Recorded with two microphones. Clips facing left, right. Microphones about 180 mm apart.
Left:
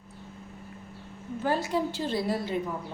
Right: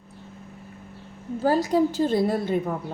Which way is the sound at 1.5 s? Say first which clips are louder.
Right 7 dB; 40° right (ahead or behind).